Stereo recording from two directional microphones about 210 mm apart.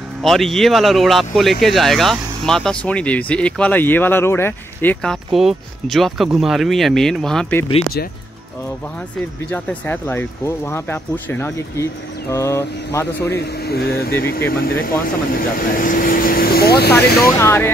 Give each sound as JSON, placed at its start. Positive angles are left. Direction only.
{"t": 0.2, "sound": "speech", "side_deg": 0}
{"t": 9.5, "sound": "speech", "side_deg": 5}
{"t": 13.3, "sound": "speech", "side_deg": 50}
{"t": 16.9, "sound": "speech", "side_deg": 15}